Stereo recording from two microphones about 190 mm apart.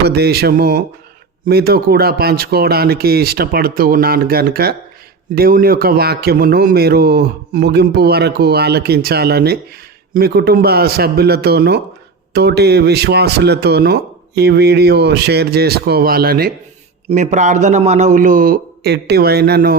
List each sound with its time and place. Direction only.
0.0 s a man's voice: 60° right (ahead or behind)
17.1 s speech: 40° right (ahead or behind); by 19.7 s 55° right (ahead or behind)